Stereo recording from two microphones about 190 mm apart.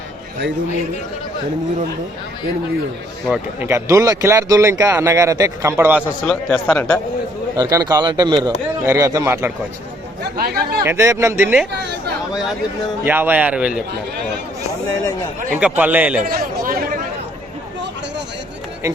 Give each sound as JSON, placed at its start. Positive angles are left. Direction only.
{"t": 3.2, "sound": "a man's voice", "side_deg": -5}
{"t": 3.7, "sound": "speech", "side_deg": -15}
{"t": 6.2, "sound": "speech", "side_deg": 5}
{"t": 7.5, "sound": "a man's voice", "side_deg": -15}
{"t": 10.3, "sound": "speech", "side_deg": -55}
{"t": 10.8, "sound": "speech", "side_deg": -15}
{"t": 13.1, "sound": "speech", "side_deg": -10}
{"t": 15.6, "sound": "speech", "side_deg": -10}
{"t": 16.2, "sound": "speech", "side_deg": -50}